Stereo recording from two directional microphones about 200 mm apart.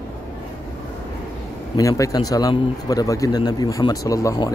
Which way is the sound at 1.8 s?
15° left (ahead or behind).